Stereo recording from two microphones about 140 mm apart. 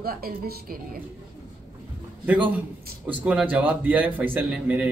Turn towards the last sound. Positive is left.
turn(degrees=-10)  # may be behind; listen again after turning